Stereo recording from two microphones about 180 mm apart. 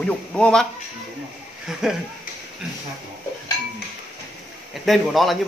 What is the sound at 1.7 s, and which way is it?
Speech, centre (ahead or behind).